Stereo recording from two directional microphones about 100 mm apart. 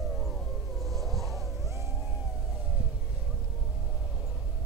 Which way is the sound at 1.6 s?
30° right (ahead or behind).